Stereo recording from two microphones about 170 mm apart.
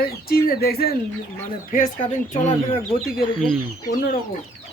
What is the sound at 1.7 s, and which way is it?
Speech, 50° left (ahead or behind).